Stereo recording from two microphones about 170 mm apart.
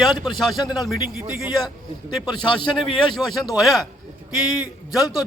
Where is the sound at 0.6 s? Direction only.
25° left (ahead or behind).